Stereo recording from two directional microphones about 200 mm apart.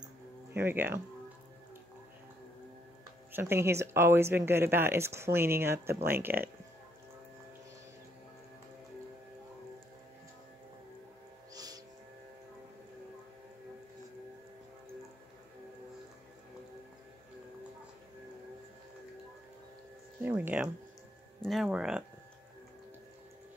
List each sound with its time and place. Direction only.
0.5 s speech: 10° right (ahead or behind)
3.3 s speech: 10° right (ahead or behind)
11.5 s music: 20° right (ahead or behind)
20.2 s a sound: 10° right (ahead or behind)
21.4 s music: centre (ahead or behind)